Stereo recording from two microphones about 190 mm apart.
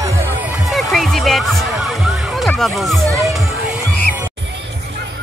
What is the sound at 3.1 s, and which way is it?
Music, 15° right (ahead or behind).